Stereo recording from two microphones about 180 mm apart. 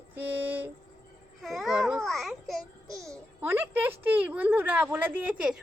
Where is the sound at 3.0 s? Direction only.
15° right (ahead or behind).